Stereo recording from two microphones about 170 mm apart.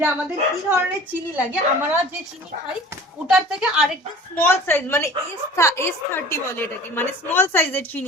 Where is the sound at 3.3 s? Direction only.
Centre (ahead or behind).